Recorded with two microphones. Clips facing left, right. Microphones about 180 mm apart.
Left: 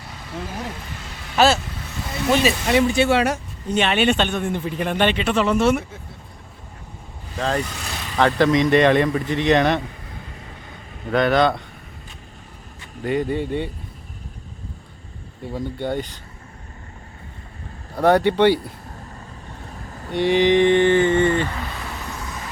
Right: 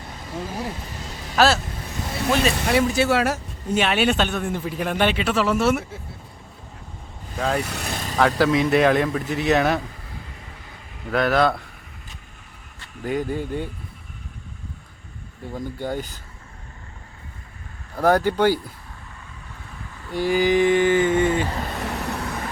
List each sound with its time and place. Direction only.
1.4 s speech: centre (ahead or behind)
7.3 s speech: 5° right (ahead or behind)
7.7 s vehicle: 60° right (ahead or behind)
8.2 s speech: 5° right (ahead or behind)
11.1 s speech: 5° right (ahead or behind)
13.0 s speech: centre (ahead or behind)
15.8 s speech: 5° right (ahead or behind)
18.0 s speech: centre (ahead or behind)
19.9 s vehicle: 40° left (ahead or behind)
20.1 s mantra: centre (ahead or behind)
21.5 s vehicle: 40° right (ahead or behind)
21.8 s vehicle: 70° right (ahead or behind)